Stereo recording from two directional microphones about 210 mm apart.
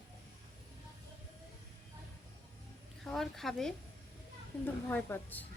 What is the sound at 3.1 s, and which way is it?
Speech, centre (ahead or behind).